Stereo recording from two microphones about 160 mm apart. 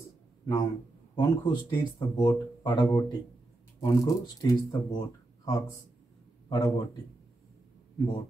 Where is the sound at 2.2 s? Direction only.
20° left (ahead or behind).